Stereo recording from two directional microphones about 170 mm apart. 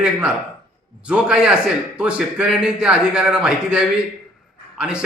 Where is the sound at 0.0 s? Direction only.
5° right (ahead or behind).